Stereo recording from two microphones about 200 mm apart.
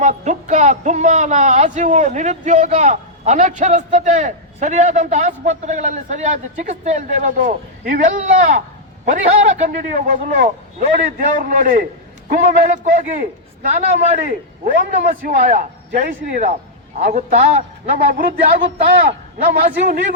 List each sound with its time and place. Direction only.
0.0 s a man's voice: 35° right (ahead or behind)